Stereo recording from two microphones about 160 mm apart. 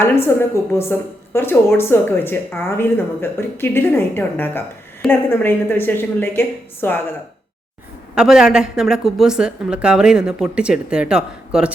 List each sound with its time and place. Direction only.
0.0 s a woman's voice: 15° left (ahead or behind)
8.1 s a woman's voice: 5° right (ahead or behind)